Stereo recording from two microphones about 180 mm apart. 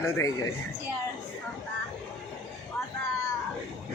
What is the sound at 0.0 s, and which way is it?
Speech, 15° left (ahead or behind).